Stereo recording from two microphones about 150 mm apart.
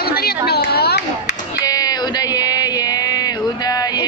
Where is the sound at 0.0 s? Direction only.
90° left.